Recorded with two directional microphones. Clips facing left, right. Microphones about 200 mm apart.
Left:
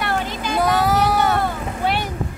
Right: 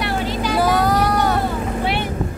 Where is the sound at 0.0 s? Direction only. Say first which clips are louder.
Right 2 dB; 50° left (ahead or behind).